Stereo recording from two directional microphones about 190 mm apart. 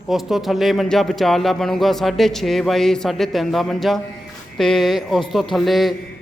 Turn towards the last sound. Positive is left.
turn(degrees=0)  # may be behind; listen again after turning